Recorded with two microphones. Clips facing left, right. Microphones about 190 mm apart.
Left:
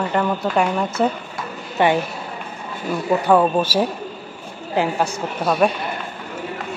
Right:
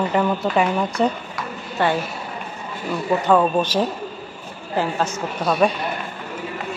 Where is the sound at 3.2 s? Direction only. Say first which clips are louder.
Left 1 dB; 10° left (ahead or behind).